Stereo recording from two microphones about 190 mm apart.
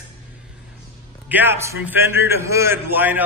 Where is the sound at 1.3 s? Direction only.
10° right (ahead or behind).